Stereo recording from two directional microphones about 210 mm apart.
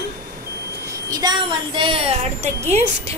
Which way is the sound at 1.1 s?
20° right (ahead or behind).